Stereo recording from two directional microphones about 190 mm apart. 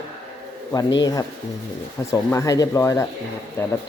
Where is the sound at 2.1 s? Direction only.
15° left (ahead or behind).